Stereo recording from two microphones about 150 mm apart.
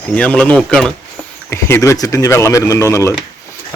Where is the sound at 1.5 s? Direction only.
15° left (ahead or behind).